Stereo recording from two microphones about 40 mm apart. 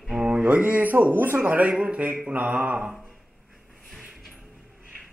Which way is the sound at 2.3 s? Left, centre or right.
Right.